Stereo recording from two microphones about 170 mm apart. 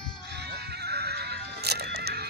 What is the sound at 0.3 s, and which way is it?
Music, 75° right (ahead or behind).